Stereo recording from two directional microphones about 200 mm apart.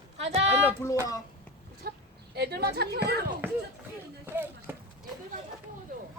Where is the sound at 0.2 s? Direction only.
30° right (ahead or behind).